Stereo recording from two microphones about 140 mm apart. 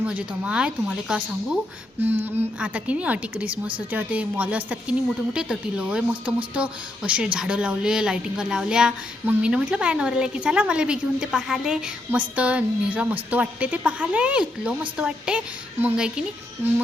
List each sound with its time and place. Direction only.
0.0 s a woman's voice: 10° right (ahead or behind)